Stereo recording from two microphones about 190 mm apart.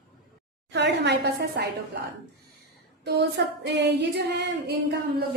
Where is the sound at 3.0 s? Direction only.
65° right (ahead or behind).